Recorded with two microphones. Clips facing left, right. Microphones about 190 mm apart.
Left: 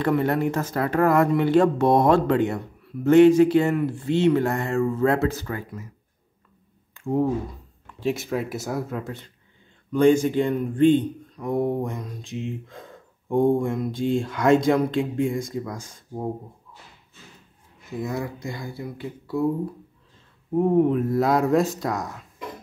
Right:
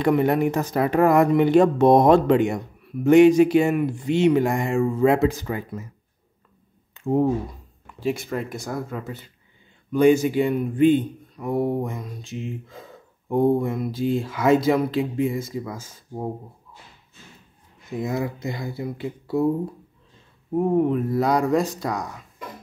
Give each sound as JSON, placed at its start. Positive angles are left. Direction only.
{"t": 0.0, "sound": "speech", "side_deg": -15}
{"t": 6.9, "sound": "a sound", "side_deg": -20}
{"t": 7.8, "sound": "speech", "side_deg": 0}
{"t": 17.9, "sound": "speech", "side_deg": -20}
{"t": 20.5, "sound": "speech", "side_deg": 0}